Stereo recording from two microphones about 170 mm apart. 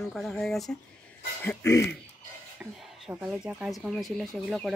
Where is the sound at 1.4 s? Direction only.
20° left (ahead or behind).